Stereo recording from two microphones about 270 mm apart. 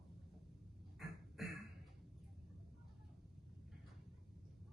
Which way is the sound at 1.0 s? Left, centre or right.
Centre.